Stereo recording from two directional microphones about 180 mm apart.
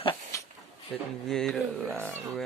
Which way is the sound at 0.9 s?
Centre (ahead or behind).